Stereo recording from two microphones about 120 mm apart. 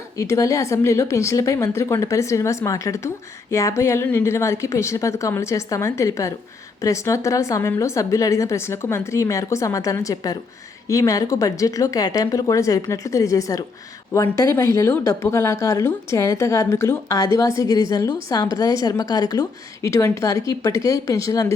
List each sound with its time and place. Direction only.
0.2 s a woman's voice: 25° left (ahead or behind)